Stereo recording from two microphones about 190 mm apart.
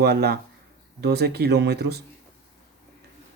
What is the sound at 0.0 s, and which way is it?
Speech, 55° right (ahead or behind).